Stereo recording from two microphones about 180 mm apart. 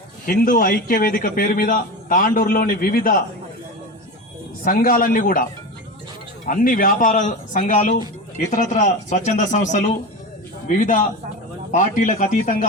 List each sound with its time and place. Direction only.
0.3 s a man's voice: 50° left (ahead or behind)
4.6 s a man's voice: 50° left (ahead or behind)